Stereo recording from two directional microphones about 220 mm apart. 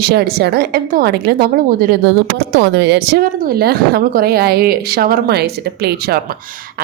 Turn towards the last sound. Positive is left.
turn(degrees=-45)  # may be behind; listen again after turning